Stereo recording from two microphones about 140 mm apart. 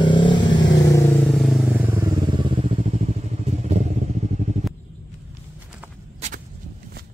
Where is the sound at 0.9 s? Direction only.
20° left (ahead or behind).